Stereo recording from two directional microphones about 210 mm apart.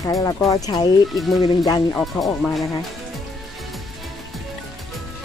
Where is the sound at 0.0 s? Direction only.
15° left (ahead or behind).